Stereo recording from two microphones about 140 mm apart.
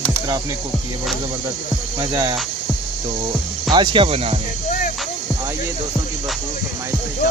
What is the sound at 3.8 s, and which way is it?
Speech, 40° right (ahead or behind).